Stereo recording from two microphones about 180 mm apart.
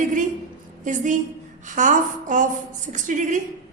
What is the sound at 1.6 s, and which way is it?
A woman's voice, 45° right (ahead or behind).